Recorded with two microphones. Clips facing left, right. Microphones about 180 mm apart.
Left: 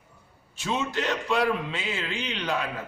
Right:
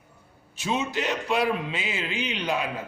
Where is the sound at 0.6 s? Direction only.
15° right (ahead or behind).